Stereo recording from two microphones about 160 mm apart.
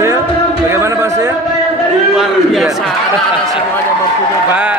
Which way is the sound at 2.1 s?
5° right (ahead or behind).